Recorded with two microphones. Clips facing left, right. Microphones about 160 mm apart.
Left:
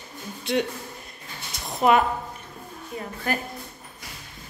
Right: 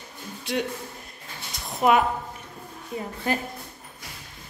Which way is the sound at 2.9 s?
20° right (ahead or behind).